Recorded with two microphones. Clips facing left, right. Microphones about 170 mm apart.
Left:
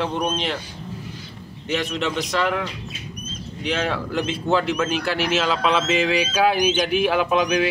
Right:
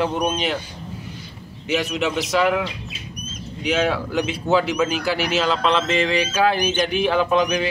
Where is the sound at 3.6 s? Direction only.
5° right (ahead or behind).